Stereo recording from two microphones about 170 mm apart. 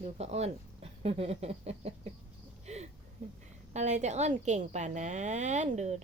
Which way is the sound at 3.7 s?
40° right (ahead or behind).